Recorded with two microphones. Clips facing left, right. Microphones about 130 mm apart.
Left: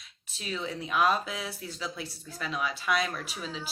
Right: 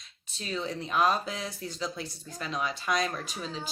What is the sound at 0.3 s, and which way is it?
Speech, 35° right (ahead or behind).